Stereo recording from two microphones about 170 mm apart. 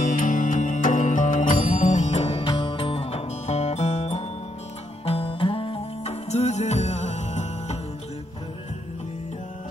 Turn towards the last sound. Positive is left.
turn(degrees=40)  # may be behind; listen again after turning